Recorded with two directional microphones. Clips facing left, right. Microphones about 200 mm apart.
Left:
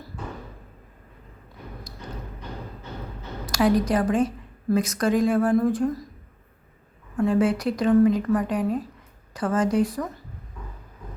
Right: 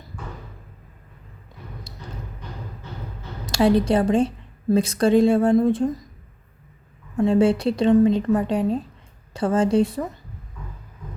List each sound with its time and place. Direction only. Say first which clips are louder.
3.5 s speech: right 3 dB; 30° right (ahead or behind)
7.2 s speech: right 3 dB; 25° right (ahead or behind)